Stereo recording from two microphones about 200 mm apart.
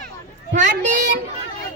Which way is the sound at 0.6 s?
60° right (ahead or behind).